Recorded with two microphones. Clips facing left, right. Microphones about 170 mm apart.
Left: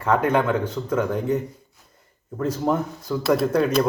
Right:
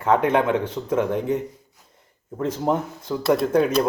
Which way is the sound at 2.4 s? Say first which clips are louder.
Even; 25° right (ahead or behind).